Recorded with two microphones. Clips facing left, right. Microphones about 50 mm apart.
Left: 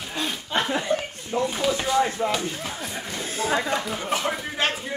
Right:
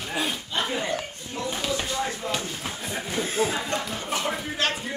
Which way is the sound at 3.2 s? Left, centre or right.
Right.